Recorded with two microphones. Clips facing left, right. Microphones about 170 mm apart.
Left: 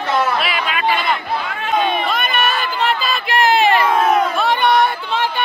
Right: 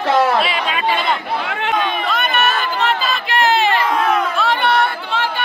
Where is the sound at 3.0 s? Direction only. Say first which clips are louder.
Left 1 dB; 15° left (ahead or behind).